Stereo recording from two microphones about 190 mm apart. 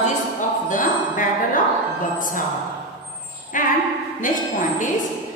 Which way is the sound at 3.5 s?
45° left (ahead or behind).